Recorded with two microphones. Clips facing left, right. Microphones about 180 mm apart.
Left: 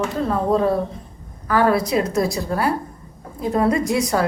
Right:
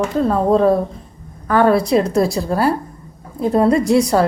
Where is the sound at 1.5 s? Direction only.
30° right (ahead or behind).